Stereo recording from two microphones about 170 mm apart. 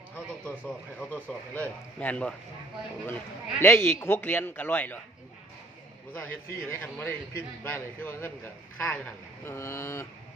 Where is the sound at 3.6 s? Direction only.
15° left (ahead or behind).